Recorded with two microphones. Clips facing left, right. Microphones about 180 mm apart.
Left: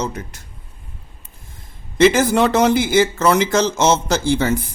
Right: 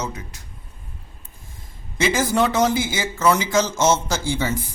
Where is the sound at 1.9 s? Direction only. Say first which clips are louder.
Left 6 dB; 60° left (ahead or behind).